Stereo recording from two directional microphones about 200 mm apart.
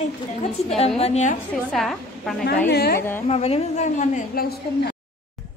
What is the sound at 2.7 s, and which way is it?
Speech, 50° left (ahead or behind).